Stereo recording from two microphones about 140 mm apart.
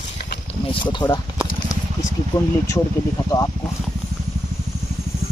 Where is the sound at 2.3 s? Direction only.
30° left (ahead or behind).